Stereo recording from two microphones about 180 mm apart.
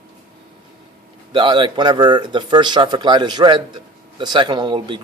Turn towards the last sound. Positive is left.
turn(degrees=-25)  # may be behind; listen again after turning